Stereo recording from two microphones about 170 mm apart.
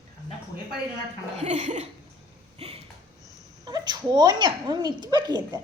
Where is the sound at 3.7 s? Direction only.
25° right (ahead or behind).